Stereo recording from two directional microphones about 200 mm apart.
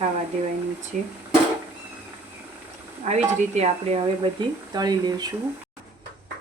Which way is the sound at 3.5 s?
30° right (ahead or behind).